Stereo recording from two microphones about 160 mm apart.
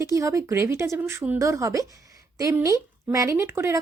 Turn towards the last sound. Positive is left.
turn(degrees=-15)  # may be behind; listen again after turning